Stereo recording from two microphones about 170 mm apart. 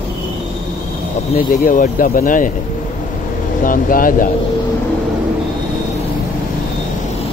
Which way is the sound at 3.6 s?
55° left (ahead or behind).